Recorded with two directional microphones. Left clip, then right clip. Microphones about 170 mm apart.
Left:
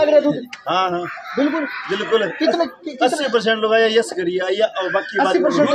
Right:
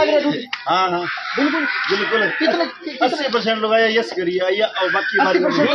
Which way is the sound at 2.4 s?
30° left (ahead or behind).